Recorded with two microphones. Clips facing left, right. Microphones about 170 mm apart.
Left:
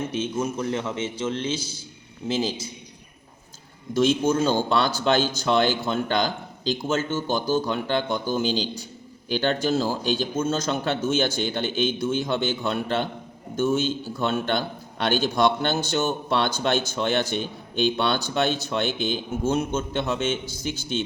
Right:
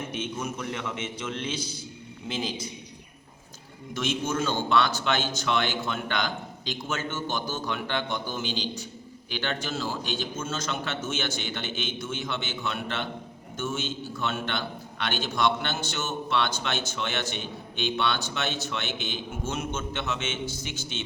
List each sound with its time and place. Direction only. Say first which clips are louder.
0.1 s a man's voice: left 6 dB; 25° left (ahead or behind)
3.9 s a man's voice: left 8 dB; 30° left (ahead or behind)